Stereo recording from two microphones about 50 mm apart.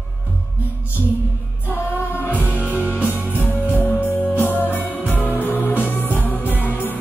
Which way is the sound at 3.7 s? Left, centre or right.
Left.